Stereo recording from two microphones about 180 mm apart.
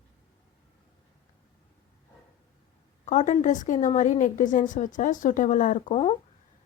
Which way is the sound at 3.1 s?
40° left (ahead or behind).